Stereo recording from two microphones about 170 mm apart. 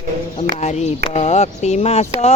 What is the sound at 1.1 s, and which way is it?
Speech, 40° left (ahead or behind).